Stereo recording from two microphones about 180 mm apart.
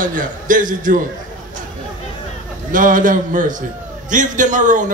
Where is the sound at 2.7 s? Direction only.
50° right (ahead or behind).